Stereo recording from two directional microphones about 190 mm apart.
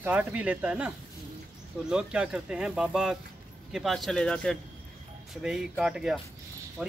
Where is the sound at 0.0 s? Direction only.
5° right (ahead or behind).